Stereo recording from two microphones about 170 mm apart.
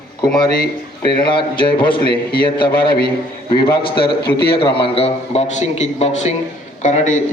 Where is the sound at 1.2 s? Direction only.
30° left (ahead or behind).